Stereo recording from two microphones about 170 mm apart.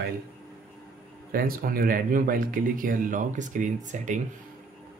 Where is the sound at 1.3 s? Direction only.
60° right (ahead or behind).